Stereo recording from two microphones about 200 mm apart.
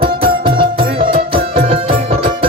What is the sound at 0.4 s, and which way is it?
Music, 25° right (ahead or behind).